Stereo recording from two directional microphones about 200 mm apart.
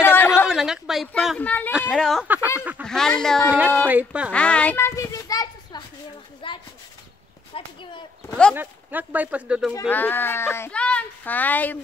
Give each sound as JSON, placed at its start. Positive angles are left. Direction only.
{"t": 0.0, "sound": "a sound", "side_deg": 10}
{"t": 0.5, "sound": "a sound", "side_deg": 0}
{"t": 1.0, "sound": "speech", "side_deg": 0}
{"t": 2.2, "sound": "speech", "side_deg": -10}
{"t": 2.8, "sound": "speech", "side_deg": 5}
{"t": 3.8, "sound": "speech", "side_deg": -5}
{"t": 4.3, "sound": "a sound", "side_deg": 5}
{"t": 7.5, "sound": "speech", "side_deg": 25}
{"t": 8.5, "sound": "speech", "side_deg": -10}
{"t": 9.8, "sound": "speech", "side_deg": 10}